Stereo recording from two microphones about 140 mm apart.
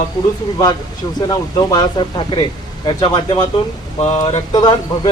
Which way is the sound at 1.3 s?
30° left (ahead or behind).